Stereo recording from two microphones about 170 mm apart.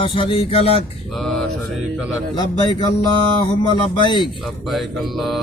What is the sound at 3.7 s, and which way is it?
Speech, 25° left (ahead or behind).